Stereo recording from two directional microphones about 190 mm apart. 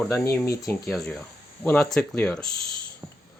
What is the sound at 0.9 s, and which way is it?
Speech, centre (ahead or behind).